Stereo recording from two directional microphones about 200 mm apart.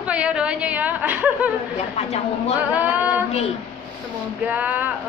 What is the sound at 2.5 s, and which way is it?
Speech, 5° right (ahead or behind).